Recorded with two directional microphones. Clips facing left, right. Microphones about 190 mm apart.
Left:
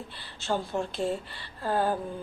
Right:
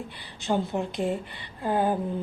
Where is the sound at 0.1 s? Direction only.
15° right (ahead or behind).